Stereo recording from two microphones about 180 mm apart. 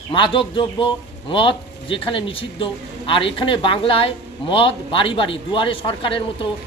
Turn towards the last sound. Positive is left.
turn(degrees=30)  # may be behind; listen again after turning